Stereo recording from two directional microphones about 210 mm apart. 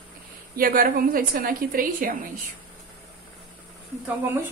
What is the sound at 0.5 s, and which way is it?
A woman's voice, 45° right (ahead or behind).